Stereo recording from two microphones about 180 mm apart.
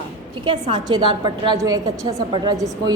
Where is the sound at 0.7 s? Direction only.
25° right (ahead or behind).